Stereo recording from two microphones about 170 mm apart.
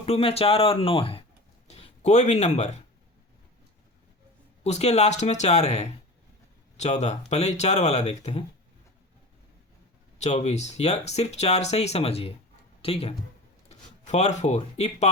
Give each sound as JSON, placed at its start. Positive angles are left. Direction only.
{"t": 0.0, "sound": "speech", "side_deg": 35}
{"t": 4.6, "sound": "speech", "side_deg": 40}
{"t": 10.2, "sound": "speech", "side_deg": 40}